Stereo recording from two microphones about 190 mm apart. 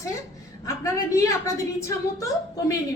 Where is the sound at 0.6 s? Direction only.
15° left (ahead or behind).